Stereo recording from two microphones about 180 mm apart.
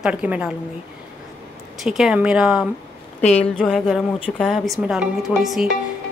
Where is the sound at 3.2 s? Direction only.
40° left (ahead or behind).